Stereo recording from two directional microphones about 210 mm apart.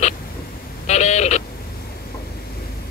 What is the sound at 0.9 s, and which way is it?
Bird, 35° left (ahead or behind).